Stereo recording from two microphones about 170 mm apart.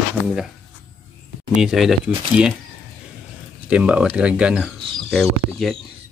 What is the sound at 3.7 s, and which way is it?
Speech, 5° right (ahead or behind).